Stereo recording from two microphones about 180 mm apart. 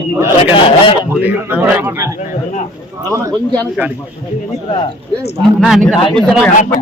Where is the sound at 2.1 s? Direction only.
45° left (ahead or behind).